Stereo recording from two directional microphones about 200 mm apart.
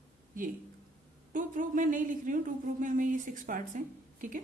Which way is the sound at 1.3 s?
40° right (ahead or behind).